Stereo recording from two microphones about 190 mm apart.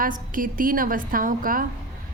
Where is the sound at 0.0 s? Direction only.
45° right (ahead or behind).